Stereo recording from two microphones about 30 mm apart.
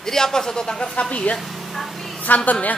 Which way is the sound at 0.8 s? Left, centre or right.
Left.